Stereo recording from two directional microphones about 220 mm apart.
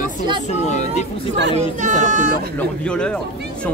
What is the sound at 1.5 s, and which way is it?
Speech, 35° right (ahead or behind).